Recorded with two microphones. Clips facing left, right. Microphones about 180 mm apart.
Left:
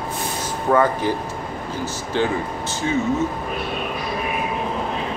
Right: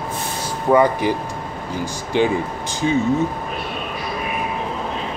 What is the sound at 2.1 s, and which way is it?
Speech, 15° right (ahead or behind).